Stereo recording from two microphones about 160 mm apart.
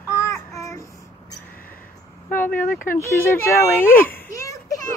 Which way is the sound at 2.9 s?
15° left (ahead or behind).